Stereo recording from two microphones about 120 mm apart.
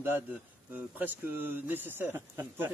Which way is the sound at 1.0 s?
15° right (ahead or behind).